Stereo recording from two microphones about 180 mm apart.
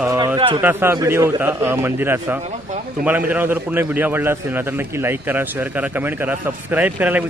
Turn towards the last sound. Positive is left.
turn(degrees=-10)  # may be behind; listen again after turning